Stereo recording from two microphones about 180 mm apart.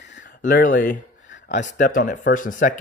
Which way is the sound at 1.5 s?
45° left (ahead or behind).